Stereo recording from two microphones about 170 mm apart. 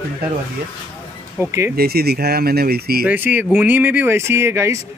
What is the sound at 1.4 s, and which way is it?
Speech, 15° right (ahead or behind).